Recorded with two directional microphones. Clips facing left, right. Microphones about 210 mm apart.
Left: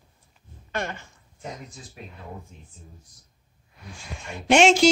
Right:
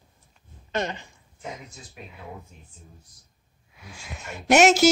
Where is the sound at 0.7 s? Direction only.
20° right (ahead or behind).